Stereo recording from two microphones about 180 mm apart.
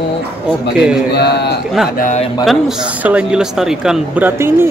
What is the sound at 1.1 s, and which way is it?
Speech, 65° left (ahead or behind).